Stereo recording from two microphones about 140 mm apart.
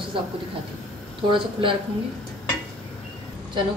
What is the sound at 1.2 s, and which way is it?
Speech, 35° right (ahead or behind).